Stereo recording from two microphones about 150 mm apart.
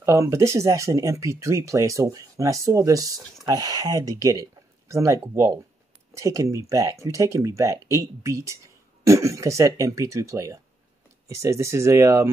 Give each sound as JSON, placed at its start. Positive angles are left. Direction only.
{"t": 0.0, "sound": "speech", "side_deg": -20}